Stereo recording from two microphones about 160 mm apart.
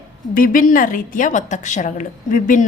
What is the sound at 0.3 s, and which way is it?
A woman's voice, 60° left (ahead or behind).